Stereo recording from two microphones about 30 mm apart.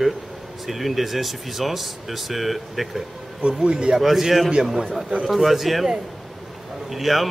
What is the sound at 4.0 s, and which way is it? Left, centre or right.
A man's voice, centre.